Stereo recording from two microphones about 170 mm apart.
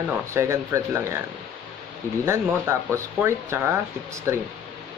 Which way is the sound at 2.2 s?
15° right (ahead or behind).